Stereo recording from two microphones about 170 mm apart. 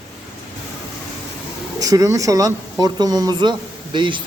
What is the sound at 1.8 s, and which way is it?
A man's voice, 20° right (ahead or behind).